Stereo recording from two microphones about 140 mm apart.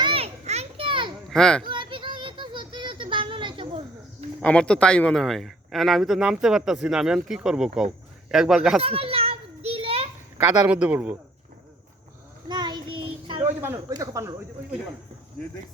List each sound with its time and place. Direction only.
0.0 s children playing: 45° right (ahead or behind)
1.3 s speech: 5° left (ahead or behind)
1.6 s a sound: 35° right (ahead or behind)
4.4 s speech: 5° left (ahead or behind)
8.8 s children playing: 45° right (ahead or behind)
10.3 s a man's voice: 10° right (ahead or behind)
12.5 s child singing: 30° right (ahead or behind)
13.9 s speech: 20° right (ahead or behind)